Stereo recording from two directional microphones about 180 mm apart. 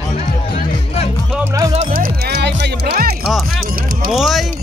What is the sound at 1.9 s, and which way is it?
Music, 55° right (ahead or behind).